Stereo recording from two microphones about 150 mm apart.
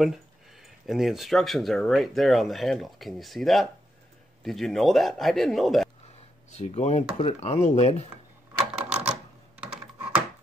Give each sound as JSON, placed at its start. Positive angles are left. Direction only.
{"t": 0.0, "sound": "speech", "side_deg": 0}
{"t": 6.5, "sound": "speech", "side_deg": 50}
{"t": 8.8, "sound": "typewriter", "side_deg": -10}